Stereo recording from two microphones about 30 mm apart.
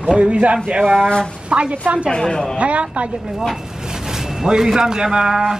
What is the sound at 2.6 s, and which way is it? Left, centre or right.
Speech, right.